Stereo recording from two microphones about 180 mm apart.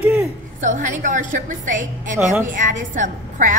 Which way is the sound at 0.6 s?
45° right (ahead or behind).